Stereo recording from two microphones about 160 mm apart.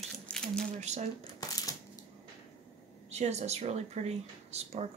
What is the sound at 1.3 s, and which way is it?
Crushing, 25° left (ahead or behind).